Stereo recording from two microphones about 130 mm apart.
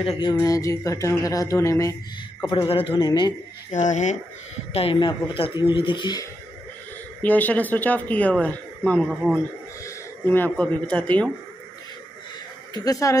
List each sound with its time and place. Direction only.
0.2 s speech: 30° left (ahead or behind)
2.4 s a man's voice: 40° left (ahead or behind)
3.1 s a man's voice: 30° left (ahead or behind)
3.7 s speech: 70° left (ahead or behind)
4.7 s a man's voice: 45° left (ahead or behind)
7.2 s speech: 15° left (ahead or behind)
12.7 s speech: 30° left (ahead or behind)